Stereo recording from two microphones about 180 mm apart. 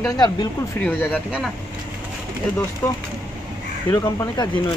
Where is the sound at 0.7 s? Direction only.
10° left (ahead or behind).